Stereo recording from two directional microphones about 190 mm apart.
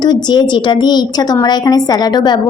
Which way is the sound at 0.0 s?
20° left (ahead or behind).